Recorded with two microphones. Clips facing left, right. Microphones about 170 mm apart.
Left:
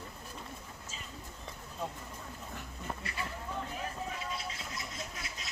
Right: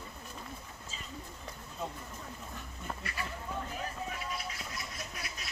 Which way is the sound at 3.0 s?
25° left (ahead or behind).